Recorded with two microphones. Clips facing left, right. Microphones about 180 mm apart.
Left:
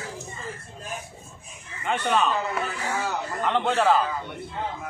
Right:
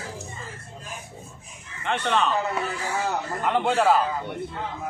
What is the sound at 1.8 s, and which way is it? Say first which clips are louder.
Speech: even; 5° left (ahead or behind).